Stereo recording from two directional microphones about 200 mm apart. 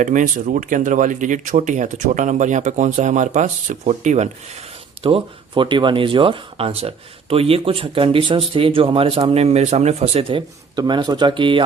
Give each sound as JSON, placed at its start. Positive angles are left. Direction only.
{"t": 0.0, "sound": "speech", "side_deg": -40}